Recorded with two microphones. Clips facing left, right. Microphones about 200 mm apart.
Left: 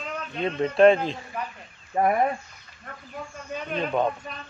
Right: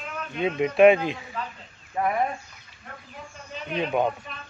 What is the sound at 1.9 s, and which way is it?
Speech, 35° left (ahead or behind).